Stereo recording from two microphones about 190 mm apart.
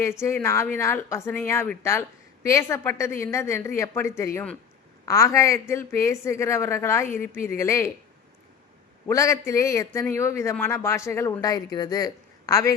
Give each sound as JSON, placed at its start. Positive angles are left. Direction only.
{"t": 0.0, "sound": "speech", "side_deg": 15}
{"t": 9.0, "sound": "speech", "side_deg": 15}